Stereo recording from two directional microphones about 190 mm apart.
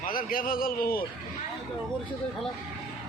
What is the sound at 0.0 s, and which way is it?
Speech, 50° left (ahead or behind).